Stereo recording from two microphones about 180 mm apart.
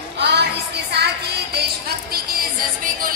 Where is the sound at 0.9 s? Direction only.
65° right (ahead or behind).